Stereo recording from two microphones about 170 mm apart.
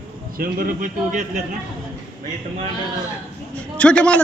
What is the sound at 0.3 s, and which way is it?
Speech, 60° right (ahead or behind).